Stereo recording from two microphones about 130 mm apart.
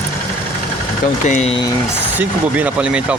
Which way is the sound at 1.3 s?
60° left (ahead or behind).